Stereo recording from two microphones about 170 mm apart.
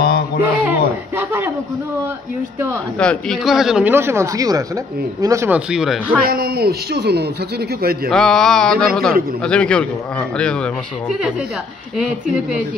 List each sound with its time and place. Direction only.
0.4 s a sound: 10° right (ahead or behind)
3.0 s speech: 5° left (ahead or behind); by 5.6 s 15° right (ahead or behind)
5.7 s a man's voice: 5° right (ahead or behind)
6.2 s speech: 60° right (ahead or behind)
8.1 s a man's voice: 5° left (ahead or behind)